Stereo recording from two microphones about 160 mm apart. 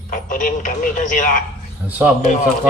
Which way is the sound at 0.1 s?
55° left (ahead or behind).